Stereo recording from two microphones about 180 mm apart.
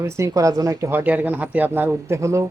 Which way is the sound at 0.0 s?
15° right (ahead or behind).